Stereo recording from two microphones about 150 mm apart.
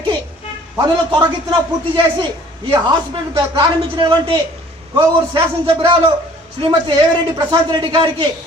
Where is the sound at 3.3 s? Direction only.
30° right (ahead or behind).